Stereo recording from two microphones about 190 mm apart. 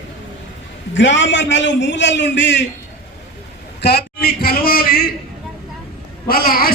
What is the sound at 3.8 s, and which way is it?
Speech, 60° left (ahead or behind).